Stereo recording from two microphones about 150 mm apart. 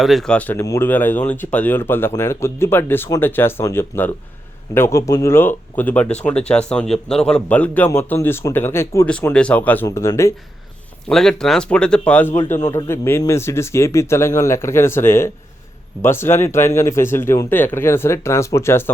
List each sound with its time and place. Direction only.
0.0 s speech: centre (ahead or behind)
0.6 s speech: 20° left (ahead or behind)
0.9 s speech: 10° left (ahead or behind)
9.0 s speech: 5° left (ahead or behind)
11.1 s speech: 5° left (ahead or behind)